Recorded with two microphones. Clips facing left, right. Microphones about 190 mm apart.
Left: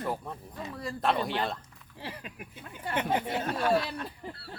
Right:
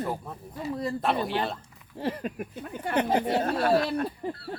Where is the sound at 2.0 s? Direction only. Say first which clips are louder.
Right 11 dB; 45° right (ahead or behind).